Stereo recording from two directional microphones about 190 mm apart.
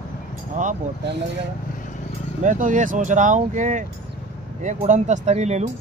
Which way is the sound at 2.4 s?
40° right (ahead or behind).